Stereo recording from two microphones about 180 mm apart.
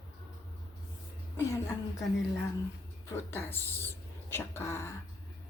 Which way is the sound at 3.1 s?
15° left (ahead or behind).